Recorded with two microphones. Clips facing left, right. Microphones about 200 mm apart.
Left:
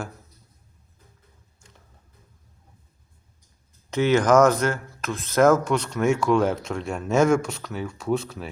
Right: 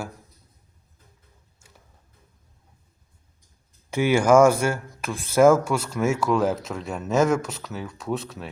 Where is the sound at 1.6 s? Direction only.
5° right (ahead or behind).